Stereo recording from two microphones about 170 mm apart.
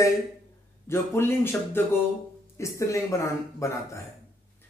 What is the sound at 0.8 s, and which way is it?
Speech, 15° left (ahead or behind).